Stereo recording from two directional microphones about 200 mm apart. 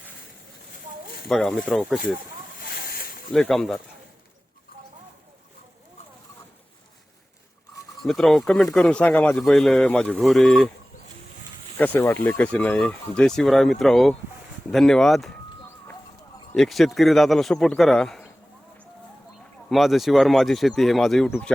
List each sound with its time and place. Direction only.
1.3 s speech: centre (ahead or behind)
2.6 s snake: 50° left (ahead or behind)
3.3 s speech: 5° left (ahead or behind)
8.0 s speech: centre (ahead or behind)
11.8 s speech: 10° left (ahead or behind)
16.6 s speech: centre (ahead or behind)
19.7 s speech: centre (ahead or behind)